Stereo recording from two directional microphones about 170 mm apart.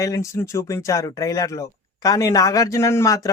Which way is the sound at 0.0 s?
20° left (ahead or behind).